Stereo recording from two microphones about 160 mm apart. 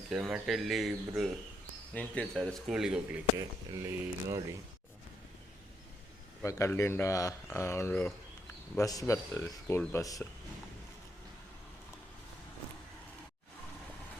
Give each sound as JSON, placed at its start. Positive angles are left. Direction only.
{"t": 0.1, "sound": "speech", "side_deg": -5}
{"t": 3.3, "sound": "speech", "side_deg": -25}
{"t": 6.4, "sound": "speech", "side_deg": 20}